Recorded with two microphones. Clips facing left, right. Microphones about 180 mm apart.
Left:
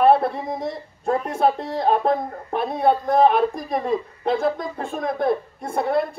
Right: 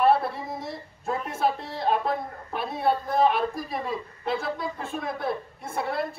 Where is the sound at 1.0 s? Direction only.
50° left (ahead or behind).